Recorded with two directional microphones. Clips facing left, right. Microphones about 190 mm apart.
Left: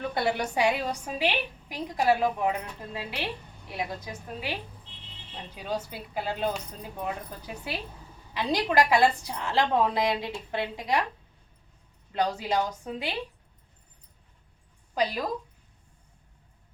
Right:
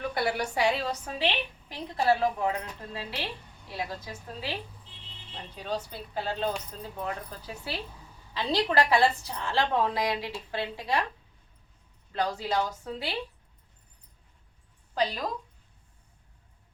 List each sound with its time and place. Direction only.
0.1 s a woman's voice: 25° left (ahead or behind)
5.5 s a woman's voice: 10° left (ahead or behind)
12.1 s a woman's voice: 15° left (ahead or behind)